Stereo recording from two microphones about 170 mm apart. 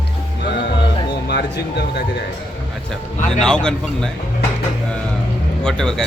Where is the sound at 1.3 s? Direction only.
85° left.